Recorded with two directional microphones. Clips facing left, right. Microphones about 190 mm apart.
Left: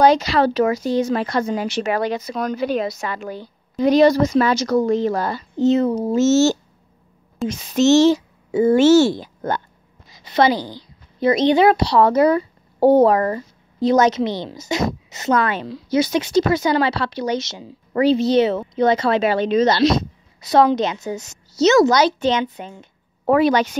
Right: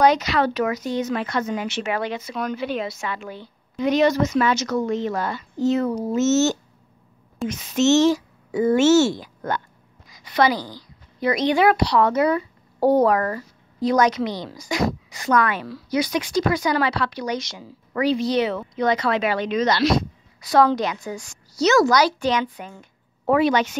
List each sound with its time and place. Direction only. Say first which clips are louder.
0.0 s speech: left 3 dB; 30° left (ahead or behind)
5.6 s a woman's voice: left 4 dB; 20° left (ahead or behind)
8.1 s a woman's voice: left 4 dB; 25° left (ahead or behind)
12.8 s a woman's voice: left 4 dB; 25° left (ahead or behind)
23.3 s speech: left 3 dB; 35° left (ahead or behind)